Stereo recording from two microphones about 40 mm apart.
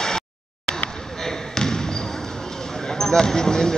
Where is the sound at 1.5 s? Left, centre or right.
Centre.